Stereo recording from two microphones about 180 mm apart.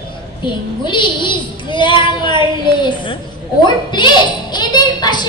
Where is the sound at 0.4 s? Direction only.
25° left (ahead or behind).